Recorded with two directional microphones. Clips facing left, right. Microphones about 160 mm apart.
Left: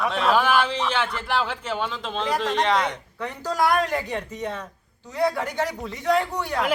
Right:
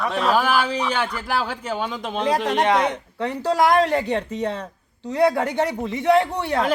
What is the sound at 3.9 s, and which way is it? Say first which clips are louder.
Speech: right 6 dB; 70° right (ahead or behind).